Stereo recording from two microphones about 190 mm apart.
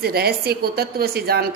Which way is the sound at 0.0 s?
55° right (ahead or behind).